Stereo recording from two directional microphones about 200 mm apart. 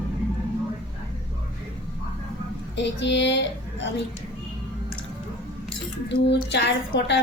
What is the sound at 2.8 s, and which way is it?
Speech, 60° left (ahead or behind).